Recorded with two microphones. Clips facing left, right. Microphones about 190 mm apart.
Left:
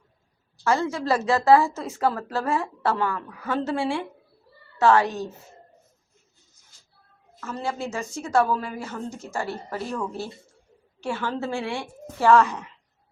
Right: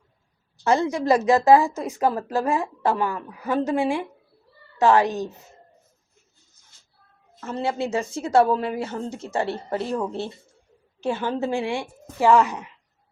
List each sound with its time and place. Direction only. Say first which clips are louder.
0.6 s a woman's voice: right 3 dB; 20° right (ahead or behind)
7.4 s a woman's voice: right 4 dB; 30° right (ahead or behind)